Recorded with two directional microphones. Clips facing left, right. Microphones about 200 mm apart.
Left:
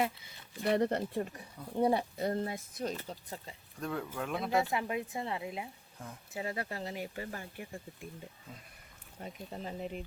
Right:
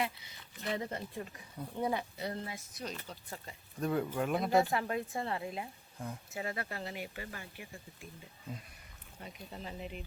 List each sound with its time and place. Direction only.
0.6 s speech: 60° left (ahead or behind)
1.2 s speech: 35° left (ahead or behind)
2.1 s speech: 45° left (ahead or behind)
3.2 s speech: 25° left (ahead or behind)
3.8 s speech: 15° right (ahead or behind); by 4.7 s centre (ahead or behind)
4.7 s speech: 15° left (ahead or behind)
6.3 s speech: 30° left (ahead or behind)
9.2 s speech: 40° left (ahead or behind)